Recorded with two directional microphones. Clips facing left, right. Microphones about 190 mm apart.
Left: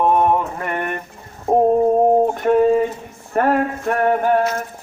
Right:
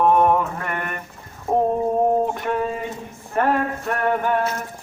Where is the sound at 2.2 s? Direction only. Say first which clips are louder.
Left 8 dB; 45° left (ahead or behind).